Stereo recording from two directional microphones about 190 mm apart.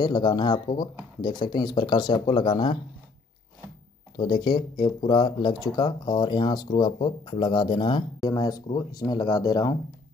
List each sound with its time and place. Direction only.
0.0 s speech: 20° left (ahead or behind)
4.2 s speech: 25° left (ahead or behind)